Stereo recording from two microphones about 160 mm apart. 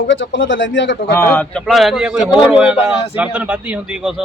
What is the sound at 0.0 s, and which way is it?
Speech, 90° left.